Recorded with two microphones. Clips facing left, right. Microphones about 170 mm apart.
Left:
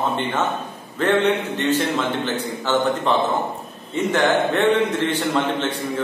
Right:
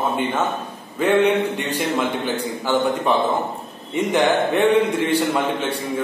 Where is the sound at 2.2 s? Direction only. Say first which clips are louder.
Right 1 dB; 10° right (ahead or behind).